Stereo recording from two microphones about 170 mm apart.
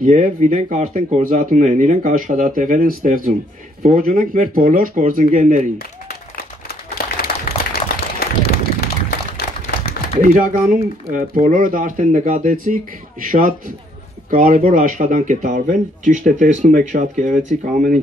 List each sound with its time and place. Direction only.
0.0 s speech: 50° right (ahead or behind)
5.8 s applause: 65° left (ahead or behind)
9.4 s a sound: 70° left (ahead or behind)
10.2 s speech: 50° right (ahead or behind)